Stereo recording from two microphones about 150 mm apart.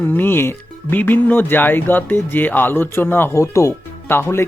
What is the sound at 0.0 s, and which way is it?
Speech, 15° left (ahead or behind).